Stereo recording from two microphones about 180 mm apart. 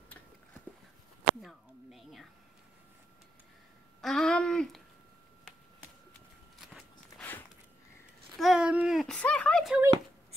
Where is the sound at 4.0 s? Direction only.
Centre (ahead or behind).